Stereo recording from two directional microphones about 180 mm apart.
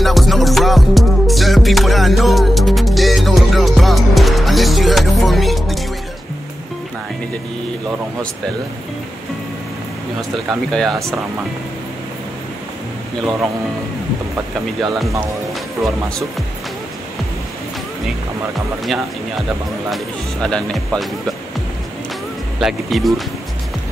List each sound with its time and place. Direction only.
0.0 s music: centre (ahead or behind)
10.5 s speech: centre (ahead or behind)
19.9 s speech: 5° left (ahead or behind)
22.6 s speech: centre (ahead or behind)